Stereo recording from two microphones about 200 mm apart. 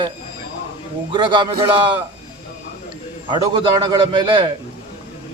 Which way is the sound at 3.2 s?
25° right (ahead or behind).